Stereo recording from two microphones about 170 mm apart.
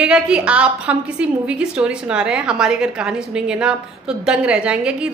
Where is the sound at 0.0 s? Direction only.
5° right (ahead or behind).